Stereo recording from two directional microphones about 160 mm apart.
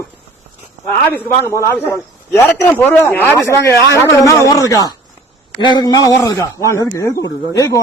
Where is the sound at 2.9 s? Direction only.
10° left (ahead or behind).